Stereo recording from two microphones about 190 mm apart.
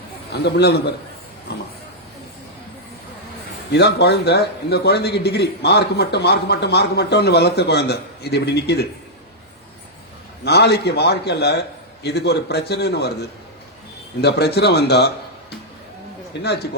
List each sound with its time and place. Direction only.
0.3 s a man's voice: 60° left (ahead or behind)
3.7 s a man's voice: 60° left (ahead or behind)
10.4 s a man's voice: 60° left (ahead or behind)
14.2 s a man's voice: 60° left (ahead or behind)